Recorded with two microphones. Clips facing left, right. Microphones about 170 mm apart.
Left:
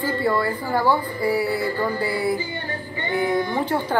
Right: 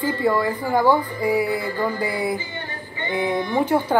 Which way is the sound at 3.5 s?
15° right (ahead or behind).